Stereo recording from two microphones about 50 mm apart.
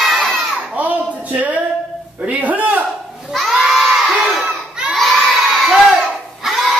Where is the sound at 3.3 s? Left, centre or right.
Centre.